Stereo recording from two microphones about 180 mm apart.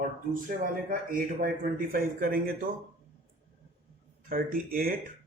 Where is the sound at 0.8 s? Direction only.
50° right (ahead or behind).